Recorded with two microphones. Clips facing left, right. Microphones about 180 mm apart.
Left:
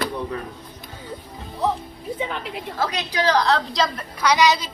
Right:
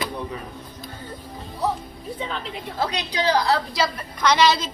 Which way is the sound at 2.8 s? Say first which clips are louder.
Left 1 dB; 15° right (ahead or behind).